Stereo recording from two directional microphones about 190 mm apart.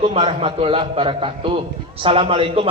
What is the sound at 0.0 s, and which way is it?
A man's voice, 30° right (ahead or behind).